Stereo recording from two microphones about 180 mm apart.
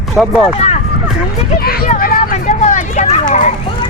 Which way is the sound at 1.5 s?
60° left (ahead or behind).